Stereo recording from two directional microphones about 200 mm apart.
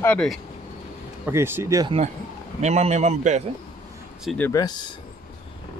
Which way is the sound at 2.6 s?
35° right (ahead or behind).